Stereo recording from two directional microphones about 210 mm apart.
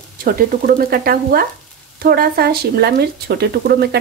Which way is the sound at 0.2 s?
45° right (ahead or behind).